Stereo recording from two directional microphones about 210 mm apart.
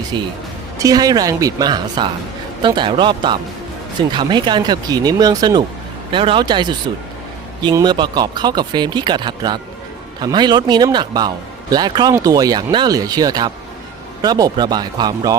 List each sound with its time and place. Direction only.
0.1 s a woman's voice: 20° right (ahead or behind)